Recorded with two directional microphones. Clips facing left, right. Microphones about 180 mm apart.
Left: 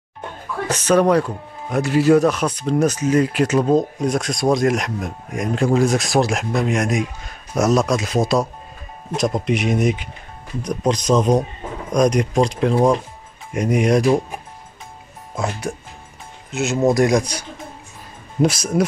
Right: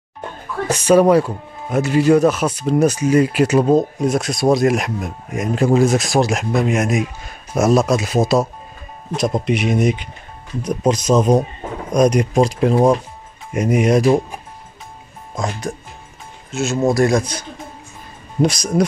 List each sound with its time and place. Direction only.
0.7 s speech: 10° right (ahead or behind)
15.3 s speech: 5° left (ahead or behind)